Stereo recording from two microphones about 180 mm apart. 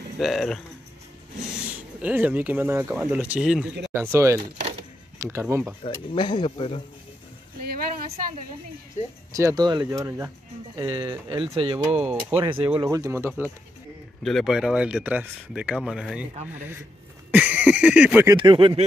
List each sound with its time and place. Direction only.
0.2 s speech: centre (ahead or behind)
1.7 s speech: 10° right (ahead or behind)
6.1 s speech: 25° left (ahead or behind)
7.6 s a sound: 50° right (ahead or behind)
9.3 s speech: 15° right (ahead or behind)
11.9 s speech: 10° right (ahead or behind)
14.2 s speech: centre (ahead or behind)
17.3 s speech: 10° right (ahead or behind)
18.2 s speech: 25° right (ahead or behind)